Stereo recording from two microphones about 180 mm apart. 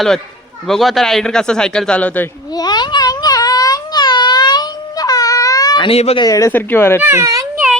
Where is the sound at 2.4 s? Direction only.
20° left (ahead or behind).